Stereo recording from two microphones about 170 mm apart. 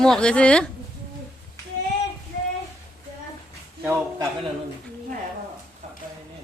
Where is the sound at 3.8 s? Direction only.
15° right (ahead or behind).